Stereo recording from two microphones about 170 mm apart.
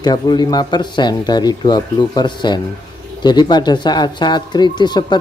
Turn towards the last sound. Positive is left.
turn(degrees=25)  # may be behind; listen again after turning